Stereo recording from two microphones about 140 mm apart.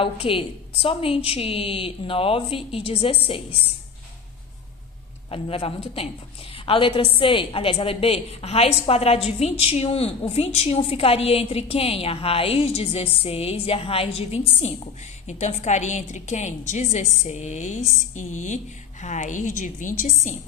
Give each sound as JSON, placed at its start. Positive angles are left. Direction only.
{"t": 0.0, "sound": "a woman's voice", "side_deg": 40}
{"t": 5.3, "sound": "a woman's voice", "side_deg": 45}